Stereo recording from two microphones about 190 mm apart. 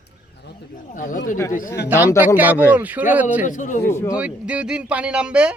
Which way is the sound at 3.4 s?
40° left (ahead or behind).